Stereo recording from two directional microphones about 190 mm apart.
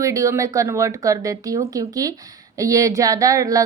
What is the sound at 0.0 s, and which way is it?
A woman's voice, 15° right (ahead or behind).